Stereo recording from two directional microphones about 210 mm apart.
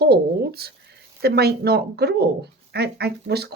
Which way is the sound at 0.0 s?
50° right (ahead or behind).